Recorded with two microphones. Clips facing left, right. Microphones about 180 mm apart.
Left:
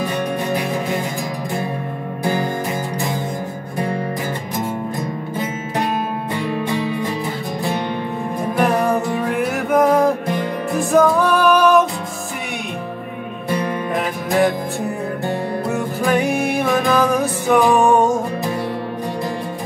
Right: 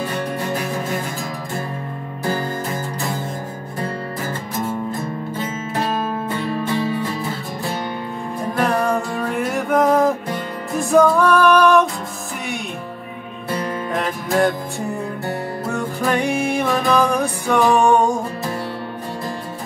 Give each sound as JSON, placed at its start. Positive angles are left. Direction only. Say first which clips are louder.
{"t": 0.0, "sound": "music", "louder": "left 2 dB", "side_deg": 15}
{"t": 4.6, "sound": "music", "louder": "right 1 dB", "side_deg": 15}
{"t": 8.5, "sound": "music", "louder": "left 2 dB", "side_deg": 10}
{"t": 13.9, "sound": "music", "louder": "left 1 dB", "side_deg": 5}
{"t": 16.0, "sound": "music", "louder": "left 2 dB", "side_deg": 5}